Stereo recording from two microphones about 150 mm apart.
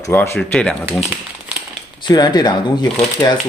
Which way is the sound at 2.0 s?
30° left (ahead or behind).